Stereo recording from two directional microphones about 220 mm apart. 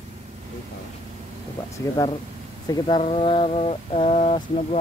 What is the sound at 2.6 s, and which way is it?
Speech, 20° left (ahead or behind).